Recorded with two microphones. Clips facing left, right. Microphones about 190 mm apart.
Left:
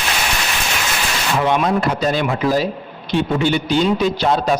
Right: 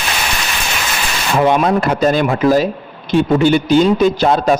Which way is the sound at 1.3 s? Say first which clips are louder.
Right 5 dB; 45° right (ahead or behind).